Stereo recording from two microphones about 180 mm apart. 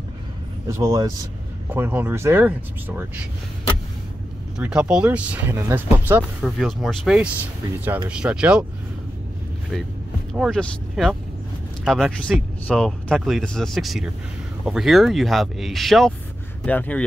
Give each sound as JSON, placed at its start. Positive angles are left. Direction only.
{"t": 0.7, "sound": "speech", "side_deg": -20}
{"t": 4.6, "sound": "speech", "side_deg": -5}
{"t": 6.4, "sound": "speech", "side_deg": 0}
{"t": 10.3, "sound": "speech", "side_deg": 0}